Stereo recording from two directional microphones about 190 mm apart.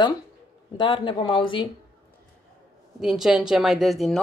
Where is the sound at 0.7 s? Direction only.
25° left (ahead or behind).